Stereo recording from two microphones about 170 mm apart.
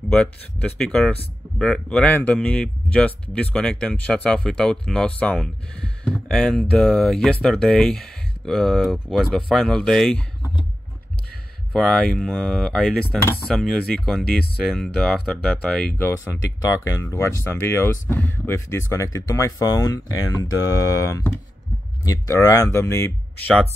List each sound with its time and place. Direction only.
0.1 s speech: 5° left (ahead or behind)
11.7 s speech: 5° left (ahead or behind)
16.0 s speech: 15° left (ahead or behind)